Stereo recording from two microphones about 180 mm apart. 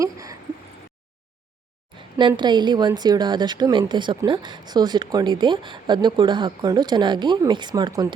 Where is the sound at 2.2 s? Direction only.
25° right (ahead or behind).